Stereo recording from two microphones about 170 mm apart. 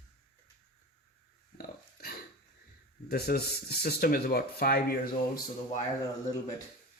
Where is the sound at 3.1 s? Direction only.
65° left (ahead or behind).